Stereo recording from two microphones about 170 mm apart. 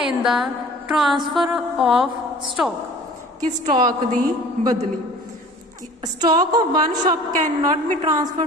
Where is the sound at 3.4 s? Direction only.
45° right (ahead or behind).